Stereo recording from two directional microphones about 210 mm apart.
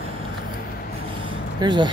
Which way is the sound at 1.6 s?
20° right (ahead or behind).